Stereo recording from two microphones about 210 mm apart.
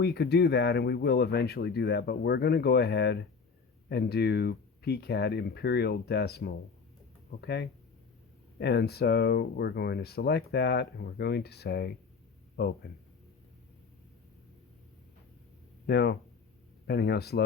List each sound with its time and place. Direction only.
0.0 s speech: 50° left (ahead or behind)
15.9 s speech: 50° left (ahead or behind)